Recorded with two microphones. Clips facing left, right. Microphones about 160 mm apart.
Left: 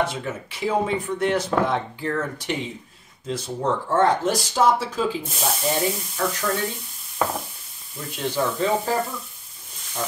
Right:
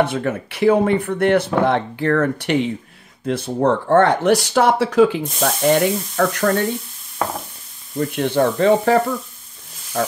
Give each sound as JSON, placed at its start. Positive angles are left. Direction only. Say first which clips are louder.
{"t": 0.0, "sound": "speech", "louder": "right 6 dB", "side_deg": -60}
{"t": 8.0, "sound": "speech", "louder": "right 8 dB", "side_deg": -60}